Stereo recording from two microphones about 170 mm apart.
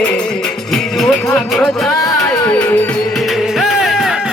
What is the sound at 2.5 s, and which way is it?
Music, 10° left (ahead or behind).